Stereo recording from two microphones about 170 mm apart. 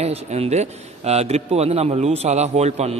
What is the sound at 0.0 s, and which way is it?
A man's voice, 40° right (ahead or behind).